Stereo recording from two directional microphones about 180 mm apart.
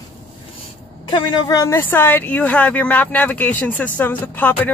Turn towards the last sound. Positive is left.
turn(degrees=10)  # may be behind; listen again after turning